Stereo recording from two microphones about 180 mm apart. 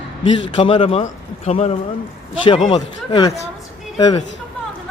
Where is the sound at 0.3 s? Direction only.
25° left (ahead or behind).